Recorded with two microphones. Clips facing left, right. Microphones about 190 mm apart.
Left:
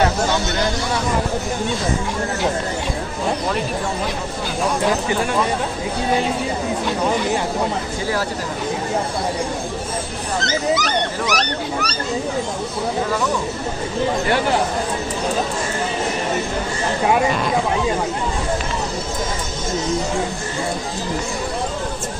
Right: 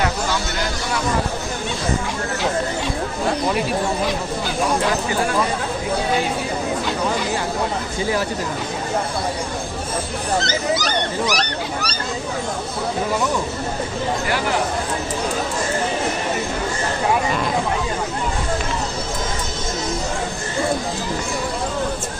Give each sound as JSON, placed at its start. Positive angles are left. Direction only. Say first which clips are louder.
{"t": 10.4, "sound": "speech", "louder": "left 2 dB", "side_deg": -35}